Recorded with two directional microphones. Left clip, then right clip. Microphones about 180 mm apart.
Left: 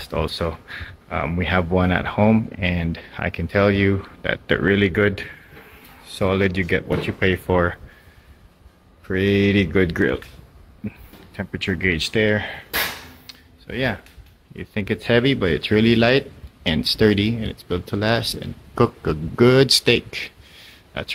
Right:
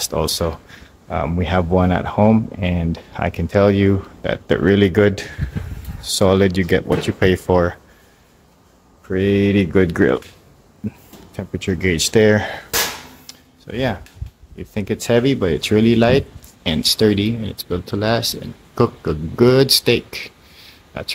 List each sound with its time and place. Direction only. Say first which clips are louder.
0.0 s speech: right 4 dB; 10° right (ahead or behind)
9.0 s speech: right 2 dB; centre (ahead or behind)
11.3 s speech: right 1 dB; 15° right (ahead or behind)
12.0 s speech: right 6 dB; 30° right (ahead or behind)
13.3 s a sound: right 1 dB; 10° right (ahead or behind)
14.6 s speech: right 1 dB; 5° right (ahead or behind)